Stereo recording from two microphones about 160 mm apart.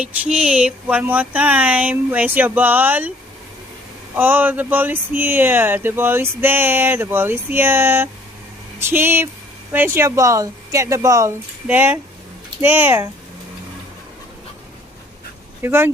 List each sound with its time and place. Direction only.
0.0 s speech: 10° right (ahead or behind)
4.1 s speech: 10° right (ahead or behind)
15.6 s speech: 15° right (ahead or behind)